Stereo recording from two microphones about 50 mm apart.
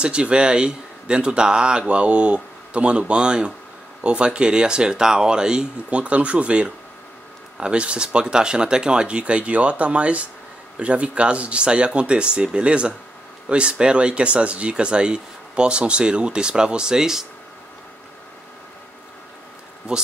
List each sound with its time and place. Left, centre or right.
0.0 s speech: right
19.9 s speech: centre